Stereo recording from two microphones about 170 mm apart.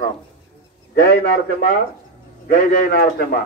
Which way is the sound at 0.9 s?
70° left (ahead or behind).